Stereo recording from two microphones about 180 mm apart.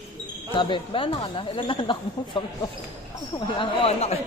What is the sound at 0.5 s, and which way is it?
Speech, 30° left (ahead or behind).